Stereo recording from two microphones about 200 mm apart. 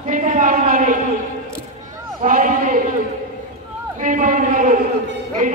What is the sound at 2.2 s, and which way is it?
Speech, 40° right (ahead or behind).